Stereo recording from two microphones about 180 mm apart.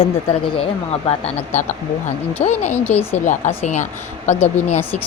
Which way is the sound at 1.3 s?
40° left (ahead or behind).